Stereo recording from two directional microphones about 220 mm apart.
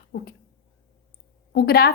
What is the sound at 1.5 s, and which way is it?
Speech, 45° left (ahead or behind).